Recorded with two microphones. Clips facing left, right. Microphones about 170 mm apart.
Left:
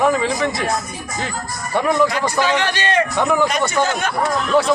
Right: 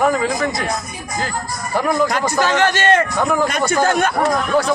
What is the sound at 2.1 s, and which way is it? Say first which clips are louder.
Speech: right 1 dB; 45° right (ahead or behind).